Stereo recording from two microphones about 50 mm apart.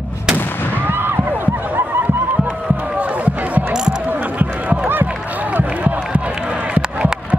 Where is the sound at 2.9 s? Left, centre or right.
Right.